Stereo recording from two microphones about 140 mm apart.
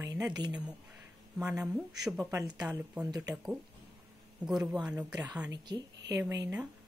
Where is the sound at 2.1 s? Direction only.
20° right (ahead or behind).